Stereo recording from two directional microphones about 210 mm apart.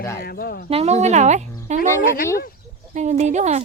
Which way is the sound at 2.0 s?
45° left (ahead or behind).